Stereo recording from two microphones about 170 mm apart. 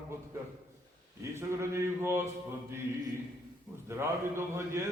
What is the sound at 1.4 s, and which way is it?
Mantra, 15° right (ahead or behind).